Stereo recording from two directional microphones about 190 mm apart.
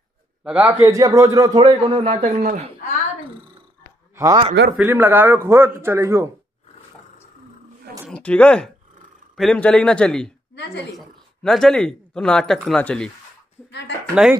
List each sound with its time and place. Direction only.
0.4 s a man's voice: 10° right (ahead or behind); by 2.0 s 25° right (ahead or behind)
2.0 s speech: 40° right (ahead or behind)
4.2 s a man's voice: 20° right (ahead or behind)
8.1 s speech: 5° left (ahead or behind)
10.5 s a woman's voice: 65° left (ahead or behind)
11.0 s speech: centre (ahead or behind)
13.7 s speech: 65° left (ahead or behind)
14.2 s speech: 5° right (ahead or behind)